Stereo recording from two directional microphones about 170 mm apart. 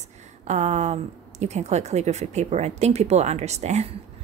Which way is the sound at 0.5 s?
40° right (ahead or behind).